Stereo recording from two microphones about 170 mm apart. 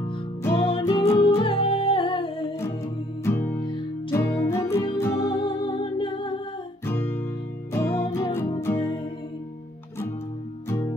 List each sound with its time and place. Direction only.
0.4 s music: 15° left (ahead or behind)
1.4 s music: 30° left (ahead or behind)
3.3 s music: 15° left (ahead or behind)
5.7 s music: 30° left (ahead or behind)
6.9 s music: 15° left (ahead or behind)